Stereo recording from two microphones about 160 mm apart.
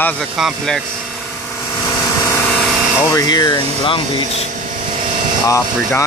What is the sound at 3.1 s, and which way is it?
Speech, 20° left (ahead or behind).